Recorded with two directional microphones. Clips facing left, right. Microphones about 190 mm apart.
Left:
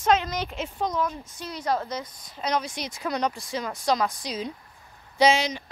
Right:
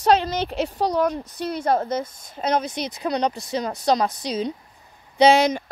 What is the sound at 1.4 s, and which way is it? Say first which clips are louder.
Speech: right 6 dB; 55° right (ahead or behind).